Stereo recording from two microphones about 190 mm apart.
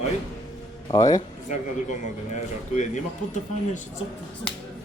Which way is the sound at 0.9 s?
20° left (ahead or behind).